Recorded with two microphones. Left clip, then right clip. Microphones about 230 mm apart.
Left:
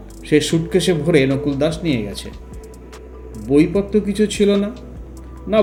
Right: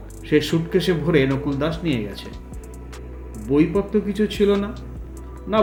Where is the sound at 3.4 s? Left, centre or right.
Left.